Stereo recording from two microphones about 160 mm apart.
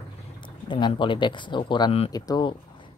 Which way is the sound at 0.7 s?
30° left (ahead or behind).